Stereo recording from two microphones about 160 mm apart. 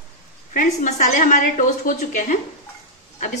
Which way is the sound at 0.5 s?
55° left (ahead or behind).